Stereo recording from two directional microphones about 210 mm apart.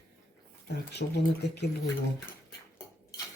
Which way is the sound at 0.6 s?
55° left (ahead or behind).